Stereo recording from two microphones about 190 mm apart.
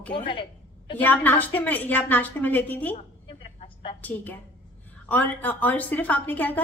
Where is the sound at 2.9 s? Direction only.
30° left (ahead or behind).